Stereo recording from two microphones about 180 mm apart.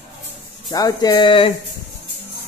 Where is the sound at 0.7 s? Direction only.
20° left (ahead or behind).